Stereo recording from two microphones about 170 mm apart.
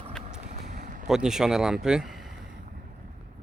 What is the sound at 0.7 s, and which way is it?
Vehicle, 50° right (ahead or behind).